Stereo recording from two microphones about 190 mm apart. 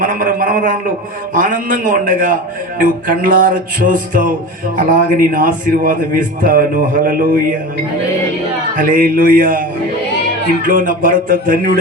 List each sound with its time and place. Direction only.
0.0 s a man's voice: 45° right (ahead or behind)
8.7 s a man's voice: 45° right (ahead or behind)